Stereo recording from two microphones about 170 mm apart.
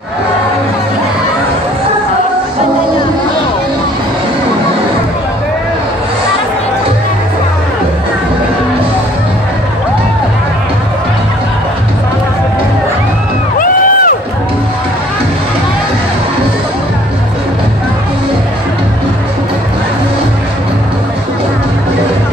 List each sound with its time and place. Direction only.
13.6 s music: 55° left (ahead or behind)